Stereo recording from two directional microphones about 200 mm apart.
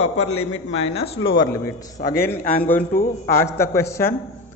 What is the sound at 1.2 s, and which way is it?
A man's voice, 20° left (ahead or behind).